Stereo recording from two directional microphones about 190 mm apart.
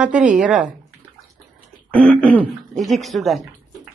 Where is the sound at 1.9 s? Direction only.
5° left (ahead or behind).